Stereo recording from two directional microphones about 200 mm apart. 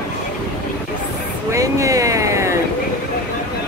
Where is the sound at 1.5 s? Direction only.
15° right (ahead or behind).